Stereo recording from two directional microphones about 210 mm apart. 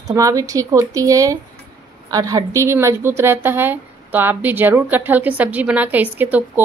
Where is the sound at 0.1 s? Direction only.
15° right (ahead or behind).